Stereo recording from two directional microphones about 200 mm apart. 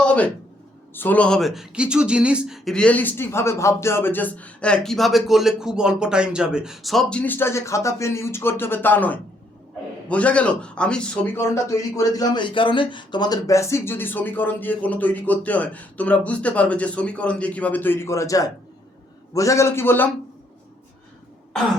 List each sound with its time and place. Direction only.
0.9 s a man's voice: 10° left (ahead or behind)